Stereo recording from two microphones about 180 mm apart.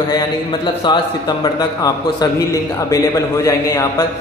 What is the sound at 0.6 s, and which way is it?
A man's voice, 25° left (ahead or behind).